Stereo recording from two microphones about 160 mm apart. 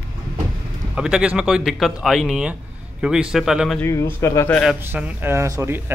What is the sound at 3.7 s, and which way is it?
Speech, 15° left (ahead or behind).